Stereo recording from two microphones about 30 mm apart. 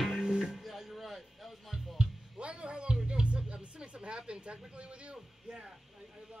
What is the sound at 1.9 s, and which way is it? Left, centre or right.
Music, right.